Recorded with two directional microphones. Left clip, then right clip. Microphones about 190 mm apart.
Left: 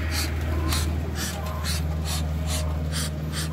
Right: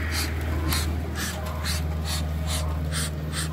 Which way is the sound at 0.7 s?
30° left (ahead or behind).